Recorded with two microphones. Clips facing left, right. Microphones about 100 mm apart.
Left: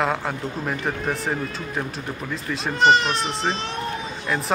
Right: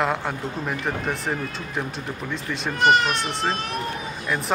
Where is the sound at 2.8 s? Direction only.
25° left (ahead or behind).